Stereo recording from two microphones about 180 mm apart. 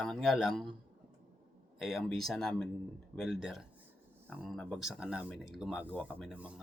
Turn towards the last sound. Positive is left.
turn(degrees=-5)  # may be behind; listen again after turning